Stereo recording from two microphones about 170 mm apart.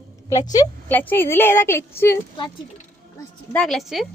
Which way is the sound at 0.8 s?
10° left (ahead or behind).